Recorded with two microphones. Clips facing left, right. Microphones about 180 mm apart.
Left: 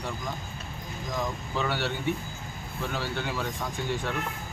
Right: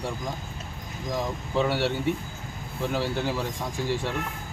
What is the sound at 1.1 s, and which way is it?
Speech, 30° right (ahead or behind).